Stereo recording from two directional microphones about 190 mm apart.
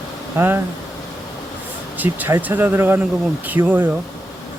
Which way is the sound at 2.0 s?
10° right (ahead or behind).